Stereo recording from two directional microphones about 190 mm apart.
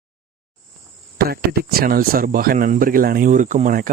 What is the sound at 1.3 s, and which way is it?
Speech, 55° right (ahead or behind).